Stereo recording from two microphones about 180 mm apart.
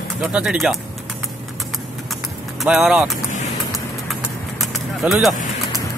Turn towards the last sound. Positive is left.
turn(degrees=0)  # may be behind; listen again after turning